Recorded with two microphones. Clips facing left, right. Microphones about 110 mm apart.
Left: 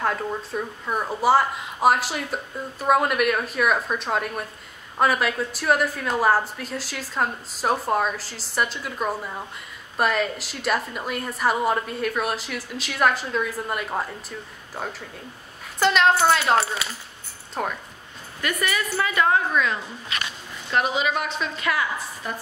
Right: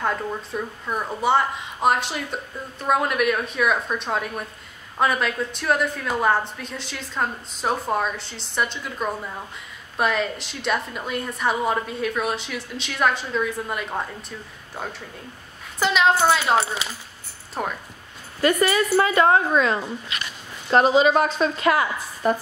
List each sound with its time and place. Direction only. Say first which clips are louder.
0.0 s speech: even; centre (ahead or behind)
17.6 s speech: even; 5° right (ahead or behind)
18.4 s a woman's voice: right 7 dB; 30° right (ahead or behind)